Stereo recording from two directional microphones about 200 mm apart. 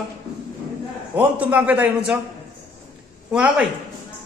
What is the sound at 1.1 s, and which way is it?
A man's voice, 10° right (ahead or behind).